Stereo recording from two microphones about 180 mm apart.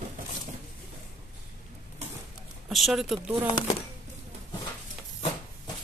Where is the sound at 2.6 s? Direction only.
Centre (ahead or behind).